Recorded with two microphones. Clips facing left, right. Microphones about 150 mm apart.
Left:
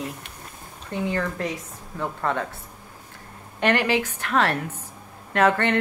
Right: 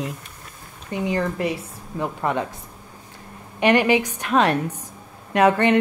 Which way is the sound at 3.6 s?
15° right (ahead or behind).